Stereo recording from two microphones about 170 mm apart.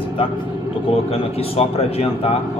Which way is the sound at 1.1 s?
35° left (ahead or behind).